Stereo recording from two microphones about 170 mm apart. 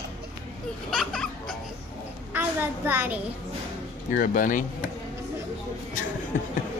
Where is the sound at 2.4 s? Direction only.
10° right (ahead or behind).